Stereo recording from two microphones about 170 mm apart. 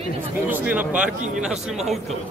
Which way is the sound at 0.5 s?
10° right (ahead or behind).